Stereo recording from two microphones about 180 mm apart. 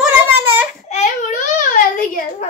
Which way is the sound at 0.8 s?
45° left (ahead or behind).